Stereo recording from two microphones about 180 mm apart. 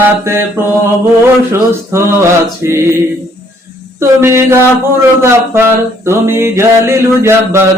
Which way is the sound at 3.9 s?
15° right (ahead or behind).